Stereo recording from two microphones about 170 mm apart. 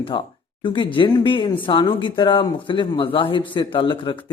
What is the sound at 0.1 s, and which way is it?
Speech, 25° left (ahead or behind).